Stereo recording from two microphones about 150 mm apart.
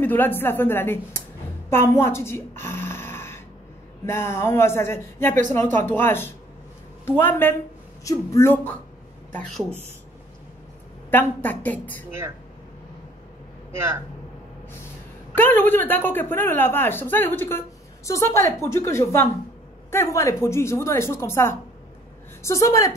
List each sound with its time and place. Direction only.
0.0 s a woman's voice: 15° left (ahead or behind)
1.7 s a sound: 15° left (ahead or behind)
4.0 s a woman's voice: 15° left (ahead or behind)
9.3 s speech: 5° left (ahead or behind)
11.1 s a woman's voice: 10° left (ahead or behind)
15.3 s a woman's voice: 15° left (ahead or behind)